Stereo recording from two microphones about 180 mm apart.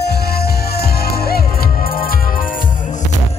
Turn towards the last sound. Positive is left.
turn(degrees=50)  # may be behind; listen again after turning